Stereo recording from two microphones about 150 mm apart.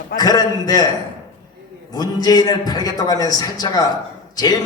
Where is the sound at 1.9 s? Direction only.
25° left (ahead or behind).